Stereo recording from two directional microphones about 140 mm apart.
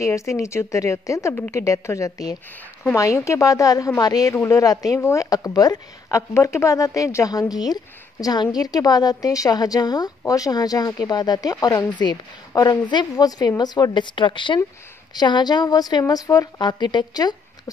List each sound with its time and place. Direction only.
0.0 s a woman's voice: 20° left (ahead or behind)